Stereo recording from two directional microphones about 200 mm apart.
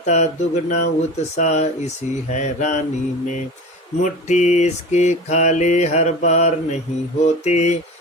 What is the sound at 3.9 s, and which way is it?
Mantra, 35° left (ahead or behind).